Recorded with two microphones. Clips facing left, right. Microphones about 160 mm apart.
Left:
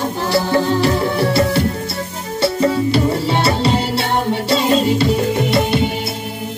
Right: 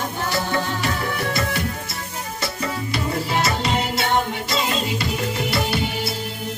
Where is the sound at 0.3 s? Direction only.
30° left (ahead or behind).